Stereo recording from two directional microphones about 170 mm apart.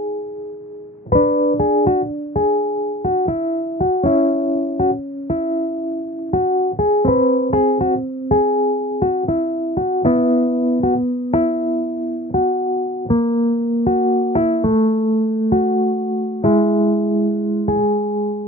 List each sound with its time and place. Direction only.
1.1 s music: 40° left (ahead or behind)
13.1 s keyboard: 30° left (ahead or behind)
15.5 s music: 40° left (ahead or behind)
16.4 s electric piano: 35° left (ahead or behind)
17.6 s music: 40° left (ahead or behind)